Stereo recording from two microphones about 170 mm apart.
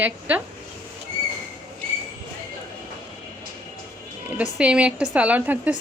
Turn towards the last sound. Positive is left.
turn(degrees=-10)  # may be behind; listen again after turning